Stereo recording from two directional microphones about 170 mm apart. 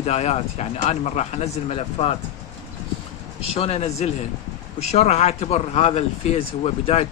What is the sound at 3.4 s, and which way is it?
Speech, 35° left (ahead or behind).